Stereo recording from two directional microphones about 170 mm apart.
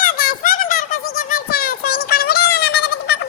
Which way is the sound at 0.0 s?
60° left (ahead or behind).